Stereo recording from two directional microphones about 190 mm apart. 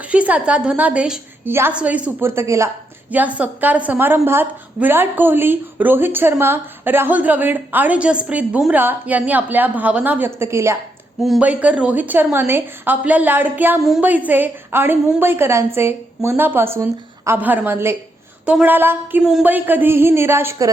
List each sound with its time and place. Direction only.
0.1 s a woman's voice: 5° right (ahead or behind)
11.2 s a woman's voice: 5° right (ahead or behind)